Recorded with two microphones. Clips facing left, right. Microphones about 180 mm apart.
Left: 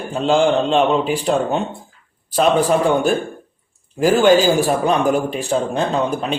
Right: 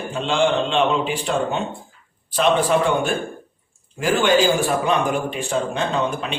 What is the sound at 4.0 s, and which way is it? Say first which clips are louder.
A man's voice: left 5 dB; 40° left (ahead or behind).